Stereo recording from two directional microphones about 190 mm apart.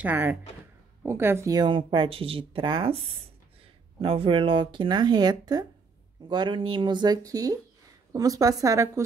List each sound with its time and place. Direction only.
0.0 s a woman's voice: 10° right (ahead or behind); by 3.0 s 25° right (ahead or behind)
4.0 s a woman's voice: 30° right (ahead or behind)